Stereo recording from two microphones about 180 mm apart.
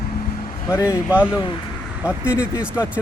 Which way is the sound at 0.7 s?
15° left (ahead or behind).